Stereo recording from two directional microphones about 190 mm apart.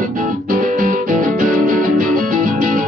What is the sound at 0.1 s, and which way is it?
Music, 45° right (ahead or behind).